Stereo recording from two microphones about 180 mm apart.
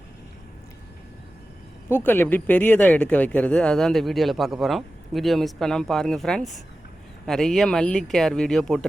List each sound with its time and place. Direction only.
1.9 s speech: 10° left (ahead or behind)